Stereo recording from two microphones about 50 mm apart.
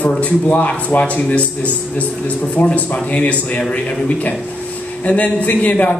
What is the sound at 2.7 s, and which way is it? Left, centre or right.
Speech, left.